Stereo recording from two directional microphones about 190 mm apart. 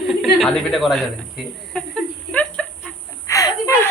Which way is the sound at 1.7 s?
5° left (ahead or behind).